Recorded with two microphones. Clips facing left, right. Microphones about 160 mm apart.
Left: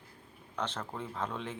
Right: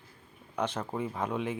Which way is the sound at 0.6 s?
10° right (ahead or behind).